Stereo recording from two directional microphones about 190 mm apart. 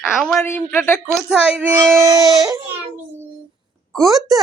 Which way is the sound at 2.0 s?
20° right (ahead or behind).